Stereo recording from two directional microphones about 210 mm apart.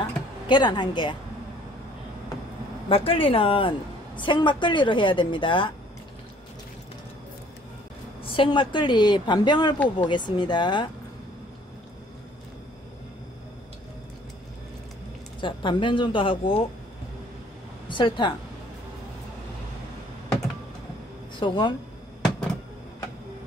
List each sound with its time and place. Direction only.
0.5 s a woman's voice: 20° left (ahead or behind)
2.9 s a woman's voice: 25° left (ahead or behind)
8.2 s a woman's voice: 25° left (ahead or behind)
15.4 s a woman's voice: 25° left (ahead or behind)
17.8 s a woman's voice: 20° left (ahead or behind)
21.4 s a woman's voice: 20° left (ahead or behind)